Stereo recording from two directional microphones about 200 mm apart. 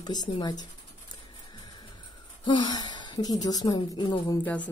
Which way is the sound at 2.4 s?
20° left (ahead or behind).